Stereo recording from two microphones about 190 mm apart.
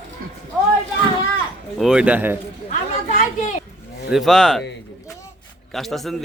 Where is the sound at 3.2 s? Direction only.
40° left (ahead or behind).